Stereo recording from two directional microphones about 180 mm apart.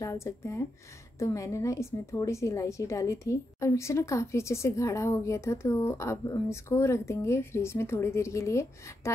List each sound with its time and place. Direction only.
0.0 s a woman's voice: 15° left (ahead or behind)